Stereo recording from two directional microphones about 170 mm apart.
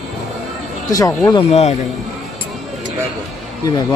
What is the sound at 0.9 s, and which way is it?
Speech, 20° left (ahead or behind).